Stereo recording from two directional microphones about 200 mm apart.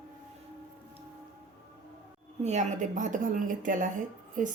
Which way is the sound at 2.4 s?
35° right (ahead or behind).